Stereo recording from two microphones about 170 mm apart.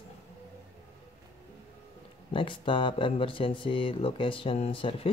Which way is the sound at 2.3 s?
30° left (ahead or behind).